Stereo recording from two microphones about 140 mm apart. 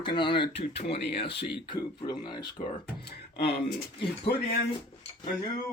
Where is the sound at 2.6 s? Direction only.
55° left (ahead or behind).